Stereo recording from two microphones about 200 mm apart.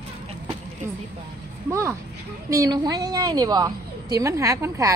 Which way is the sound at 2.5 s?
15° right (ahead or behind).